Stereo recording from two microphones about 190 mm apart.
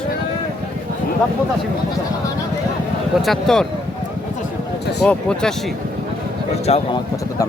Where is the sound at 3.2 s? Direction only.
Centre (ahead or behind).